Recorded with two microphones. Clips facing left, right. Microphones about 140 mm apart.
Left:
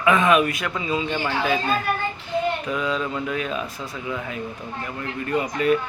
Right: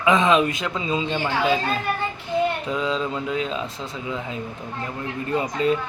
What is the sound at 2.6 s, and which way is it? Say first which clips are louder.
Speech: right 1 dB; 25° right (ahead or behind).